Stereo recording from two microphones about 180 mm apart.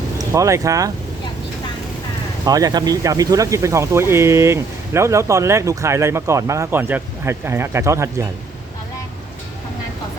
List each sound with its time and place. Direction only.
0.3 s speech: 15° right (ahead or behind)
2.4 s speech: 20° right (ahead or behind)